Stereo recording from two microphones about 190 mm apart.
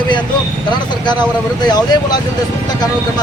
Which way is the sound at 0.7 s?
25° left (ahead or behind).